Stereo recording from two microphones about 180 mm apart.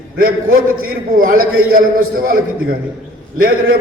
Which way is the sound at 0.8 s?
55° right (ahead or behind).